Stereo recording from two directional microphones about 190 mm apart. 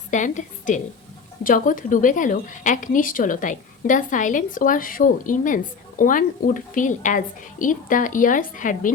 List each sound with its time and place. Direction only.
0.1 s a woman's voice: 40° left (ahead or behind)